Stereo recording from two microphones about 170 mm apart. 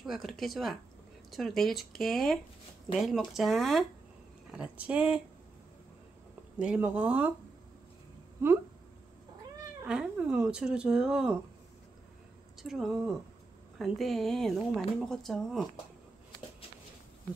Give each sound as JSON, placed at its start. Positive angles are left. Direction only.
{"t": 0.0, "sound": "speech", "side_deg": 0}
{"t": 6.6, "sound": "speech", "side_deg": -5}
{"t": 9.8, "sound": "speech", "side_deg": -5}
{"t": 12.6, "sound": "speech", "side_deg": -5}